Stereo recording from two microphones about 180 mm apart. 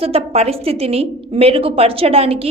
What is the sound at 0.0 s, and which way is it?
A woman's voice, 35° right (ahead or behind).